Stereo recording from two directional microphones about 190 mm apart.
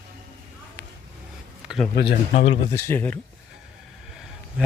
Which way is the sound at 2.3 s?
30° left (ahead or behind).